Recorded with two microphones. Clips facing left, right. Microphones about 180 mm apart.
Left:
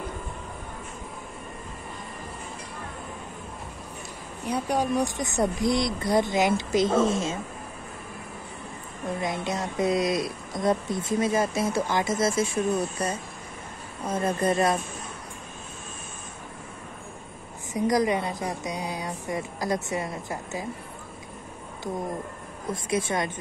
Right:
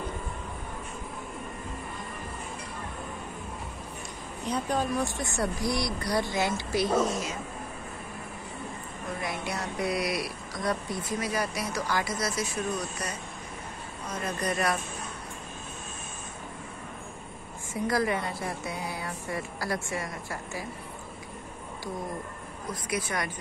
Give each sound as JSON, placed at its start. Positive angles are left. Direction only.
{"t": 4.5, "sound": "speech", "side_deg": 15}
{"t": 9.2, "sound": "speech", "side_deg": 20}
{"t": 17.7, "sound": "speech", "side_deg": 20}
{"t": 22.7, "sound": "speech", "side_deg": 25}